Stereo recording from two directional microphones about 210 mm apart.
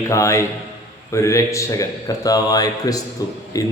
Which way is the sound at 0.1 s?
15° left (ahead or behind).